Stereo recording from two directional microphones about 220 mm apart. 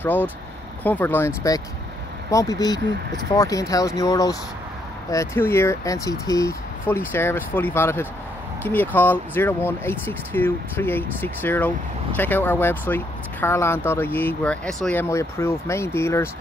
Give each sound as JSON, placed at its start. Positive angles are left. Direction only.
{"t": 0.0, "sound": "speech", "side_deg": 10}